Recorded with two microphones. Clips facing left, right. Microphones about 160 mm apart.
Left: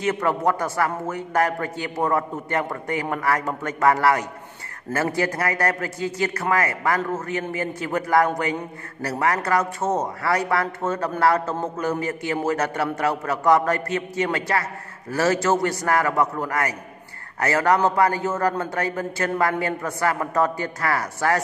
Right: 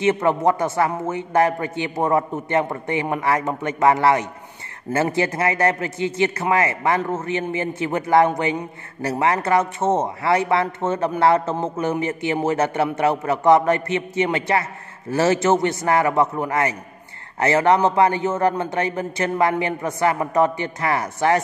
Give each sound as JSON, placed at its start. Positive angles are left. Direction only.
{"t": 0.0, "sound": "speech", "side_deg": -25}